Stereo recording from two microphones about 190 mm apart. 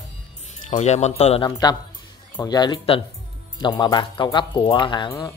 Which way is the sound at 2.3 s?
20° left (ahead or behind).